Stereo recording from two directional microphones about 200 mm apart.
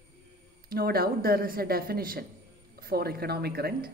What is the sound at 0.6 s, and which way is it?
A woman's voice, 50° right (ahead or behind).